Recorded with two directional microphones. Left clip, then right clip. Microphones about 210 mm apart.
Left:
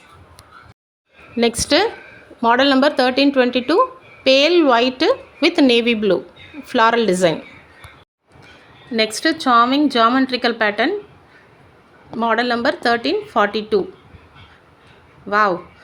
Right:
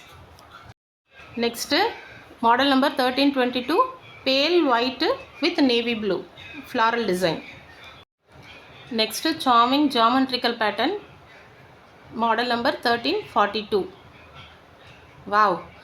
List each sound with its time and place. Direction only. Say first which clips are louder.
1.4 s a woman's voice: left 6 dB; 35° left (ahead or behind)
9.0 s speech: left 6 dB; 25° left (ahead or behind)
12.2 s speech: left 4 dB; 20° left (ahead or behind)
15.3 s speech: left 3 dB; 20° left (ahead or behind)